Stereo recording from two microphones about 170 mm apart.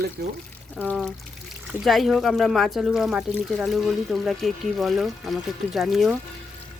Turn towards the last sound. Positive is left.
turn(degrees=0)  # may be behind; listen again after turning